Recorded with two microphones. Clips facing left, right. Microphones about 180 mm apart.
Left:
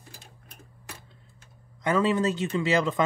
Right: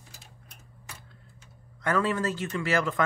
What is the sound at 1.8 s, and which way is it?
A man's voice, 20° left (ahead or behind).